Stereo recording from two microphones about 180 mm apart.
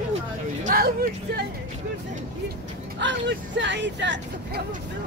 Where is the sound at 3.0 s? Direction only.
80° right.